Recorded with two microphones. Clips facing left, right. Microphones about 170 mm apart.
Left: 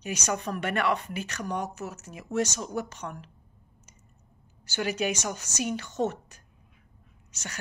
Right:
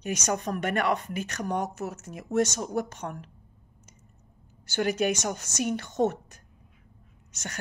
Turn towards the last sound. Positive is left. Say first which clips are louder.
# right 2 dB
turn(degrees=-50)  # may be behind; listen again after turning